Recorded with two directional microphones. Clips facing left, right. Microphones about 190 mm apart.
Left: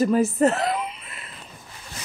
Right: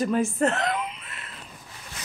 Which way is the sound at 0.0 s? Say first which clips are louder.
Left 4 dB; 5° left (ahead or behind).